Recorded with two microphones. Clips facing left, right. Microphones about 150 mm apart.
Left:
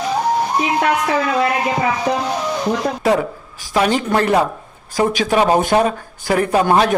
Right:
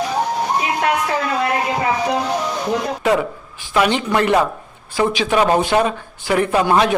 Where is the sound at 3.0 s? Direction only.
35° left (ahead or behind).